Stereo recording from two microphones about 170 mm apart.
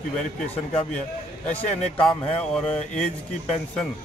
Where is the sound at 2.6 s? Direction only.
35° left (ahead or behind).